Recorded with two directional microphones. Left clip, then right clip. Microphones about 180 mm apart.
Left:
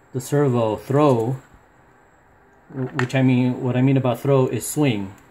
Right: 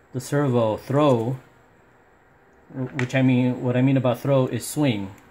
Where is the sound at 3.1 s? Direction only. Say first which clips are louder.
Even; centre (ahead or behind).